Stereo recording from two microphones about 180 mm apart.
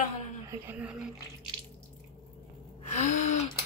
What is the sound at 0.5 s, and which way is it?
Speech, 10° right (ahead or behind).